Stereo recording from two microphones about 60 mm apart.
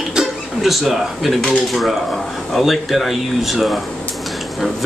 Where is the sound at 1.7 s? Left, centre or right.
Centre.